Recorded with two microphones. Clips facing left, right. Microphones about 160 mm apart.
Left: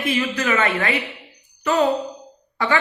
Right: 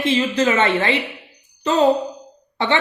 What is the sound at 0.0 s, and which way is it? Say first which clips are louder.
Speech: right 4 dB; 25° right (ahead or behind).